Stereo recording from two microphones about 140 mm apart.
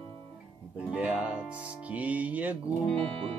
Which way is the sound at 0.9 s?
10° right (ahead or behind).